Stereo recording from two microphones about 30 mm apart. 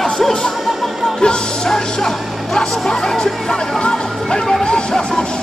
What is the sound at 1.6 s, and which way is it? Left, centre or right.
Music, centre.